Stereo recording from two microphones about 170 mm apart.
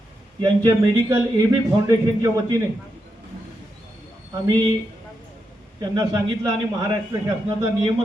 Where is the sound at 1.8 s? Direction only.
20° right (ahead or behind).